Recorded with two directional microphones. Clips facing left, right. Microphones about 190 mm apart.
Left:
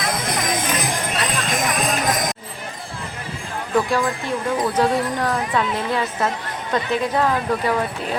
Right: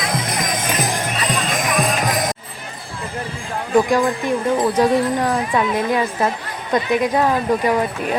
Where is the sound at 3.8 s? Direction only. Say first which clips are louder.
Right 4 dB; 15° right (ahead or behind).